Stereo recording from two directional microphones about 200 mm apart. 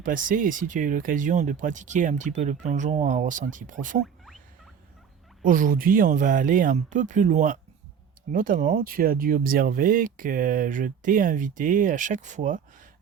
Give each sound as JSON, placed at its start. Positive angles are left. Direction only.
{"t": 0.0, "sound": "speech", "side_deg": -40}
{"t": 5.4, "sound": "speech", "side_deg": -45}